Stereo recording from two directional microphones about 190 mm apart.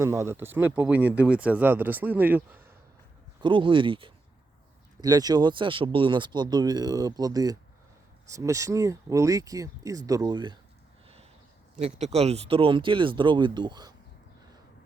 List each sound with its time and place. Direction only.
0.0 s speech: 15° right (ahead or behind)
3.4 s speech: 25° right (ahead or behind)
11.8 s speech: 35° right (ahead or behind)